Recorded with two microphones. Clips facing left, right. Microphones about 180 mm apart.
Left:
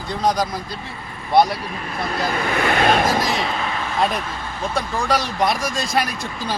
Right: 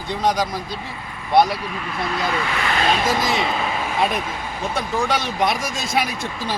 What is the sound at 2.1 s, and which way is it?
Speech, 45° left (ahead or behind).